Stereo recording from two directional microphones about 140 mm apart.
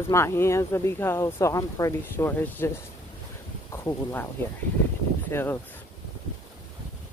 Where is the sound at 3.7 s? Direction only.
20° left (ahead or behind).